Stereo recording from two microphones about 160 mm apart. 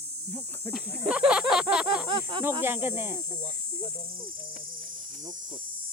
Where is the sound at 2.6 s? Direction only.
15° right (ahead or behind).